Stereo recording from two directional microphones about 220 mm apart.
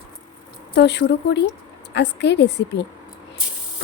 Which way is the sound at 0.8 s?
50° left (ahead or behind).